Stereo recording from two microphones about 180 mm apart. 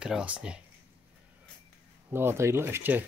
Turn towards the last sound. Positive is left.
turn(degrees=-10)  # may be behind; listen again after turning